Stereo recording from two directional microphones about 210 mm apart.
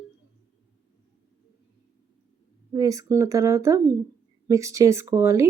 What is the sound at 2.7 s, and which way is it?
A woman's voice, 15° right (ahead or behind).